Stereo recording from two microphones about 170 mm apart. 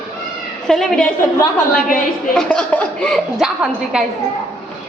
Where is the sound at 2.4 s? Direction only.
5° left (ahead or behind).